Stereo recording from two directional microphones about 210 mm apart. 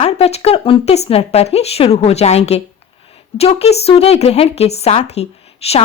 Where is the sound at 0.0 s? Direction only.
30° left (ahead or behind).